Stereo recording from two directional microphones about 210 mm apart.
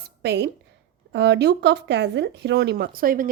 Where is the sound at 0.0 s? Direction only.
50° right (ahead or behind).